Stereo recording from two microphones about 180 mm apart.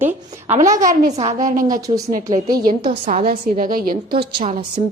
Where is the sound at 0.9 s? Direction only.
40° right (ahead or behind).